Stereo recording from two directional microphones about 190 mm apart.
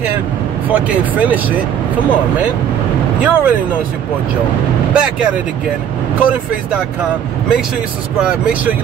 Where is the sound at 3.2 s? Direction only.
5° right (ahead or behind).